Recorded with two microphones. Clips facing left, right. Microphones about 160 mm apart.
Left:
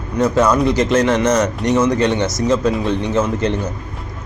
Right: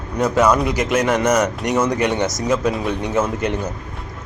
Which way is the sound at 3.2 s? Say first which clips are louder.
Left 1 dB; 15° right (ahead or behind).